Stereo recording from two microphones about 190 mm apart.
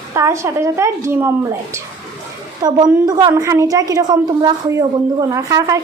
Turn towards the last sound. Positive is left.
turn(degrees=-15)  # may be behind; listen again after turning